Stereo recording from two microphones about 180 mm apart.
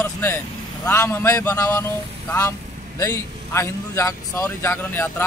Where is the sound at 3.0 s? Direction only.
15° left (ahead or behind).